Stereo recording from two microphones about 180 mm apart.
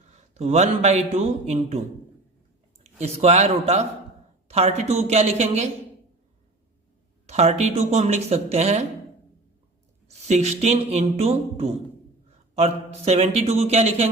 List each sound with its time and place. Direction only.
0.1 s speech: 40° right (ahead or behind)
3.0 s speech: 40° right (ahead or behind)
7.3 s speech: 35° right (ahead or behind)
10.1 s speech: 40° right (ahead or behind)